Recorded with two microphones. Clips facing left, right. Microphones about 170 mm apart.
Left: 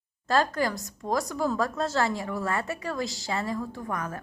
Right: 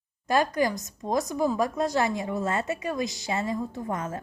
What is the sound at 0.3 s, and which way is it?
A woman's voice, 20° right (ahead or behind).